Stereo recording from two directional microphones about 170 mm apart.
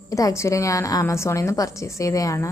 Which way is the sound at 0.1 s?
20° left (ahead or behind).